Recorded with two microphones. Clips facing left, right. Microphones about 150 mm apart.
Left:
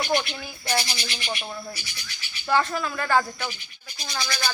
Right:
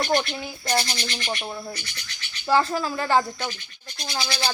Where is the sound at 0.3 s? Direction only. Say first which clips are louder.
Right 2 dB; 25° right (ahead or behind).